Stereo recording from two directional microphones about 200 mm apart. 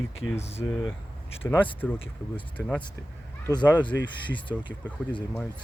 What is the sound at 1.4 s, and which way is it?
Speech, 10° left (ahead or behind).